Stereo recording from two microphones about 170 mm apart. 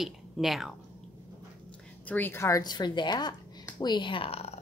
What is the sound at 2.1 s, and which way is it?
A woman's voice, 10° left (ahead or behind).